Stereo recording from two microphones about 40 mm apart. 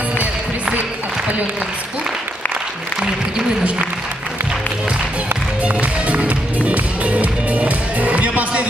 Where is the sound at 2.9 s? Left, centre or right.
Centre.